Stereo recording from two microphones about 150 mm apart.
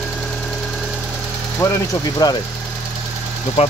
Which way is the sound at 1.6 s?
20° left (ahead or behind).